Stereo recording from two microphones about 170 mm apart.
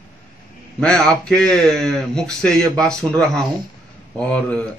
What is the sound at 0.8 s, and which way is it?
Speech, 5° left (ahead or behind).